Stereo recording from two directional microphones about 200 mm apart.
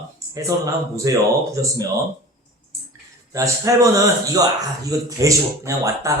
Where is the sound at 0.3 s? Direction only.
15° right (ahead or behind).